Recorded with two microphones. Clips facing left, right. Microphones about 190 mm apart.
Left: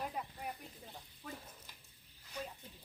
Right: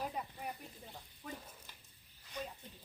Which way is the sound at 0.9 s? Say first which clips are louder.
Right 2 dB; centre (ahead or behind).